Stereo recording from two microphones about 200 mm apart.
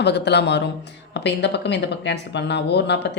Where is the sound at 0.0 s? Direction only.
55° left (ahead or behind).